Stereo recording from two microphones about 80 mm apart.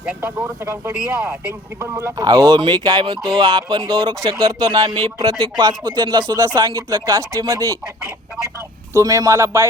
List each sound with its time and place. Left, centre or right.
0.2 s speech: right
1.2 s speech: centre
2.1 s speech: right
6.4 s speech: right
8.9 s speech: right